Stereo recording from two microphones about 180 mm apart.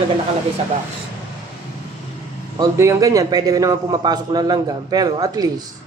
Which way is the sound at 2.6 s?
15° right (ahead or behind).